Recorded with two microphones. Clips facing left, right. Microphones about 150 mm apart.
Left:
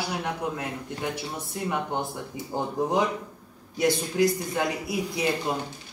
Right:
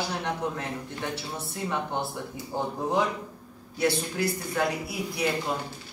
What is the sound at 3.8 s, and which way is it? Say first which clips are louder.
A man's voice: left 4 dB; 15° left (ahead or behind).